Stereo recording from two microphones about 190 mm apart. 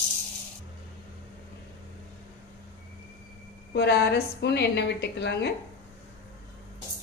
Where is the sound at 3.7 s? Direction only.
60° left (ahead or behind).